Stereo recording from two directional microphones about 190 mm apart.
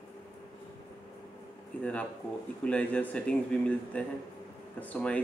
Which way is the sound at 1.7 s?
10° left (ahead or behind).